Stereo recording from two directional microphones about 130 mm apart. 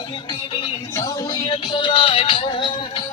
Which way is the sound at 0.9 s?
25° left (ahead or behind).